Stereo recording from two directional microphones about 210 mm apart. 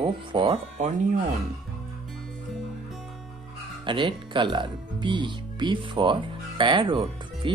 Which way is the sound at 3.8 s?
25° right (ahead or behind).